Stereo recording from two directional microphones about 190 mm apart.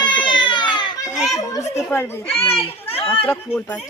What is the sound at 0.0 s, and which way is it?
Baby cry, 25° left (ahead or behind).